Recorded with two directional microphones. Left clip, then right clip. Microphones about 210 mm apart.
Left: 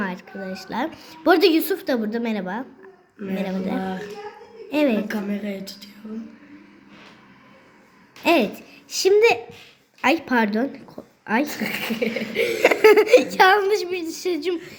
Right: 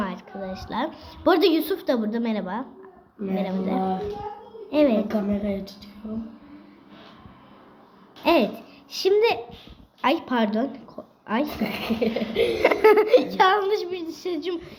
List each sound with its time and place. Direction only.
0.0 s a woman's voice: 50° left (ahead or behind)
3.3 s a sound: 40° left (ahead or behind)
3.8 s speech: 15° right (ahead or behind)
4.7 s a woman's voice: 45° left (ahead or behind)
5.0 s speech: 15° right (ahead or behind)
8.2 s a sound: 40° left (ahead or behind)
8.9 s a woman's voice: 45° left (ahead or behind)
11.4 s speech: 15° right (ahead or behind)
12.5 s a woman's voice: 35° left (ahead or behind)